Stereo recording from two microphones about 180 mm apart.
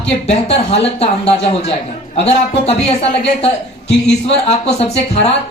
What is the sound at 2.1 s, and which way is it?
Speech, 35° left (ahead or behind).